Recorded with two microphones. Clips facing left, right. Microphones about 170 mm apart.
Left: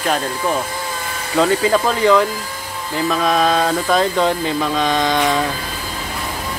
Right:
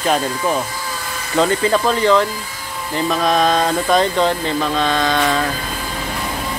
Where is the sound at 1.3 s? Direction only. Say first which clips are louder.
Left 1 dB; centre (ahead or behind).